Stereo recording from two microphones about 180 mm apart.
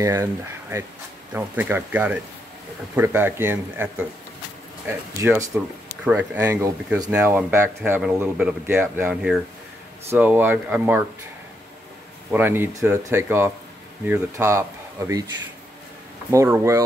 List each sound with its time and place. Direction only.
0.0 s speech: 15° right (ahead or behind)
12.3 s speech: 10° right (ahead or behind)
16.3 s speech: 15° right (ahead or behind)